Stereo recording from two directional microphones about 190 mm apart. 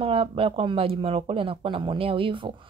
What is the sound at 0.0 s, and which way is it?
A woman's voice, 30° right (ahead or behind).